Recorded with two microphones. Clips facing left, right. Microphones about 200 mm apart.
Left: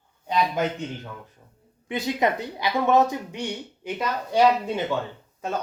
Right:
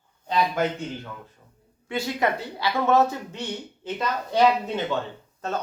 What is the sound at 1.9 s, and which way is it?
Speech, 20° left (ahead or behind).